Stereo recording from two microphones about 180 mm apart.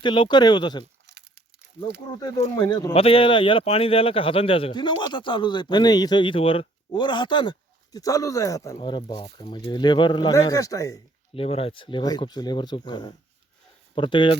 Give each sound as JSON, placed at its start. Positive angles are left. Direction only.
{"t": 0.0, "sound": "speech", "side_deg": 25}
{"t": 1.0, "sound": "crumpling", "side_deg": -70}
{"t": 2.4, "sound": "speech", "side_deg": 25}
{"t": 11.3, "sound": "speech", "side_deg": 30}